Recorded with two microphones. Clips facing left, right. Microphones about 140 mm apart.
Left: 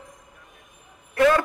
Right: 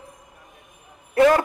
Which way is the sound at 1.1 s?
30° right (ahead or behind).